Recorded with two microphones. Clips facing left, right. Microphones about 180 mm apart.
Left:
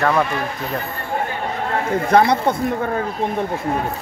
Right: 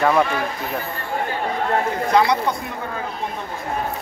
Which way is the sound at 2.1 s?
55° left (ahead or behind).